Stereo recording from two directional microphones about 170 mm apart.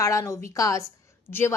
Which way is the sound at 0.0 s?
15° left (ahead or behind).